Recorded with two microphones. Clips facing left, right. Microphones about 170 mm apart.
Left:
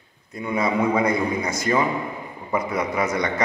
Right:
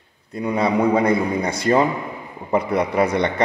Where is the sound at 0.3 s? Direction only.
35° right (ahead or behind).